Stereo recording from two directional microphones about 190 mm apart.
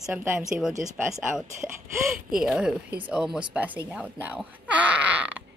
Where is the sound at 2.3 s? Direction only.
5° right (ahead or behind).